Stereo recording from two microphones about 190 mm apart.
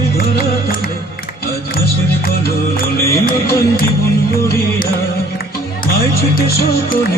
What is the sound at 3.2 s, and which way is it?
Music, 50° left (ahead or behind).